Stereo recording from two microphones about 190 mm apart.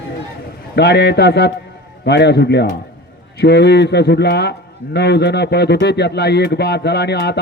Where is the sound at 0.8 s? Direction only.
60° left (ahead or behind).